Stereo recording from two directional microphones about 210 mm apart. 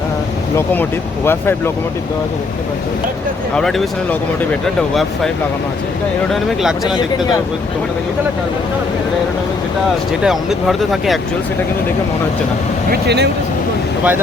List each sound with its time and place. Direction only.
0.5 s speech: 10° left (ahead or behind)
3.5 s speech: centre (ahead or behind)
6.3 s speech: centre (ahead or behind)
10.2 s speech: centre (ahead or behind)
12.9 s speech: 55° right (ahead or behind)